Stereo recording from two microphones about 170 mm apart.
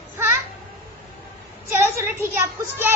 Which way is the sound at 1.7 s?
15° right (ahead or behind).